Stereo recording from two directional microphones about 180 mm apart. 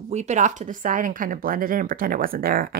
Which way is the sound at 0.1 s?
40° right (ahead or behind).